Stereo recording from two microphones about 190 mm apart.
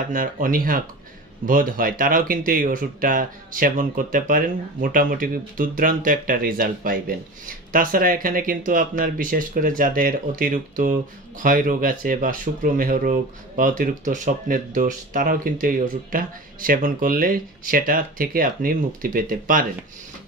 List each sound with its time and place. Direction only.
0.1 s speech: 45° right (ahead or behind)